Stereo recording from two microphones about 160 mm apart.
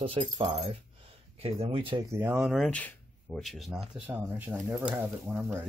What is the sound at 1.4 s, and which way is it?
Speech, 40° right (ahead or behind).